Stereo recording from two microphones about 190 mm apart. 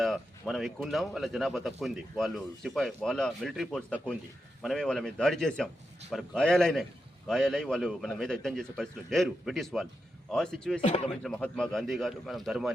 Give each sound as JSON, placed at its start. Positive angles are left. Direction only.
{"t": 0.0, "sound": "speech", "side_deg": 0}
{"t": 10.8, "sound": "speech", "side_deg": 35}
{"t": 11.2, "sound": "speech", "side_deg": 5}